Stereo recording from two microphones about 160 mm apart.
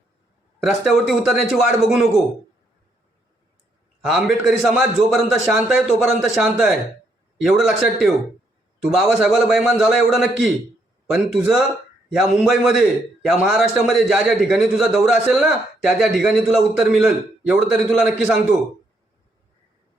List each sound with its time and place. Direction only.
0.6 s a man's voice: centre (ahead or behind)
4.0 s a man's voice: 5° right (ahead or behind)